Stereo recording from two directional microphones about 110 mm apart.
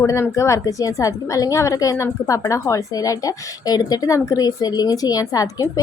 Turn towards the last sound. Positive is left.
turn(degrees=35)  # may be behind; listen again after turning